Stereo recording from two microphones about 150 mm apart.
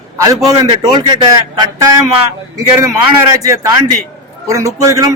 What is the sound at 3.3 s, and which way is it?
A man's voice, 25° right (ahead or behind).